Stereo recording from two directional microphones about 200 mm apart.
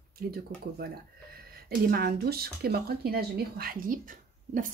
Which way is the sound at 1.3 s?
50° right (ahead or behind).